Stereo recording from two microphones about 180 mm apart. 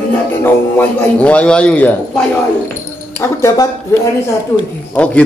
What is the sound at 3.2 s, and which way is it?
Speech, 15° left (ahead or behind).